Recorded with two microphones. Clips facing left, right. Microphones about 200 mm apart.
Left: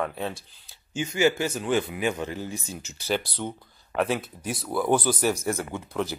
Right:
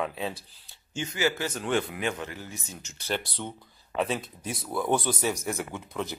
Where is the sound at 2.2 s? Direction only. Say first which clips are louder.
Left 6 dB; 15° left (ahead or behind).